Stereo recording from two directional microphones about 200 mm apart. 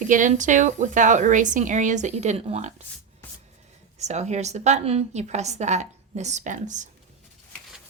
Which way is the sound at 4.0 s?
35° right (ahead or behind).